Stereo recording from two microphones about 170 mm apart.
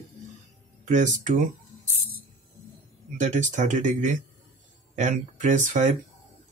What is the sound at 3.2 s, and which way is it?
Speech, 45° right (ahead or behind).